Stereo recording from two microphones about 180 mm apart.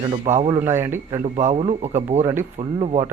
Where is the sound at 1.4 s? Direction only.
40° right (ahead or behind).